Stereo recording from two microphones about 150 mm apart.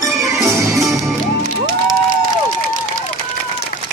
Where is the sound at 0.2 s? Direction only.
20° right (ahead or behind).